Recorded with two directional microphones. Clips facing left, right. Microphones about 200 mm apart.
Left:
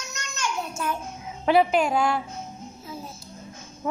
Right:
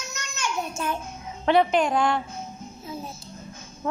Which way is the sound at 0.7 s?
25° right (ahead or behind).